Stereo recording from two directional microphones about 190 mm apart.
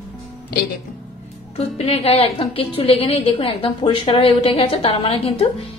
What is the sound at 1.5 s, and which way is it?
A woman's voice, 30° left (ahead or behind).